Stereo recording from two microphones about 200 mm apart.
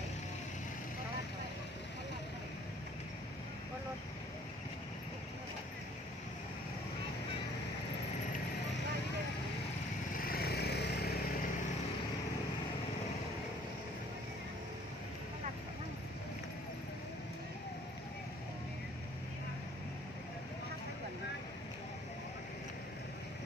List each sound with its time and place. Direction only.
10.1 s vehicle: 50° left (ahead or behind)